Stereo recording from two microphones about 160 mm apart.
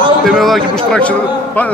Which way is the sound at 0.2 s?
Centre (ahead or behind).